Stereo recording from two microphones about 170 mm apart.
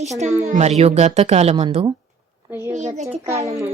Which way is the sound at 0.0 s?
40° right (ahead or behind).